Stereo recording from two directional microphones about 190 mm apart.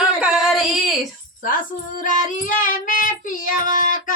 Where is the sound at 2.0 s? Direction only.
45° left (ahead or behind).